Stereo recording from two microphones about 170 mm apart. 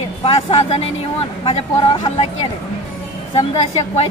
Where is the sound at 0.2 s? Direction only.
35° left (ahead or behind).